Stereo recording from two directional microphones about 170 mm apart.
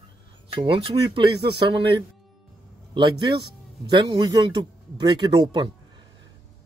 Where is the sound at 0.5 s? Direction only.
30° right (ahead or behind).